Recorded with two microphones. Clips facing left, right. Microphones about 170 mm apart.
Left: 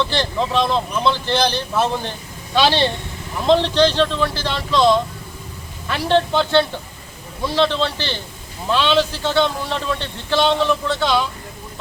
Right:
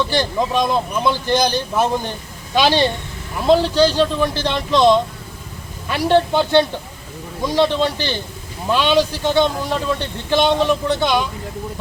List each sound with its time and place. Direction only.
0.0 s a man's voice: 15° right (ahead or behind)